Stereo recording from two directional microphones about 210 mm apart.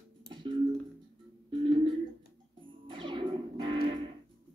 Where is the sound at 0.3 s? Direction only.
20° right (ahead or behind).